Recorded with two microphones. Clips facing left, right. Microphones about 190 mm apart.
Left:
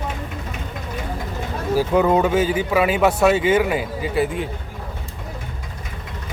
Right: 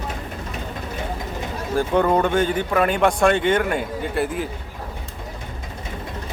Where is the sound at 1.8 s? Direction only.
5° left (ahead or behind).